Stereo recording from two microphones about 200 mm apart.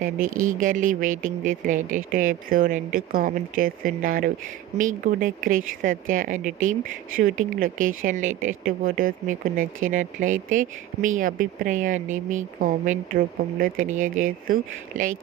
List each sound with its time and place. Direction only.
0.3 s speech: 40° right (ahead or behind)